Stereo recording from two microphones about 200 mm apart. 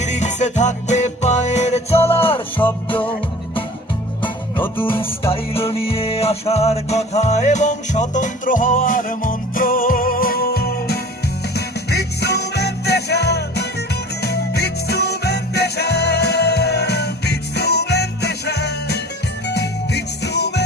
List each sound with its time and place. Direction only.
0.0 s music: 35° left (ahead or behind)
4.9 s music: 25° left (ahead or behind); by 20.7 s 55° left (ahead or behind)